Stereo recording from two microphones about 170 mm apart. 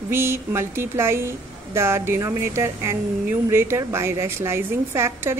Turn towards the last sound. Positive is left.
turn(degrees=-15)  # may be behind; listen again after turning